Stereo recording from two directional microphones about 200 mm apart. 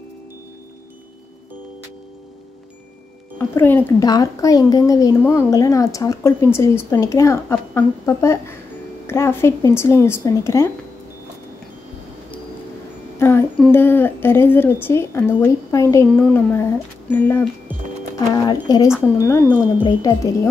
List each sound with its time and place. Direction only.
3.3 s speech: 10° left (ahead or behind)
13.2 s a sound: 15° left (ahead or behind)
13.6 s a woman's voice: 10° left (ahead or behind)